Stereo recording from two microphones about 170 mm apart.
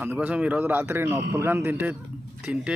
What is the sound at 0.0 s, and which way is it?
A man's voice, 10° right (ahead or behind).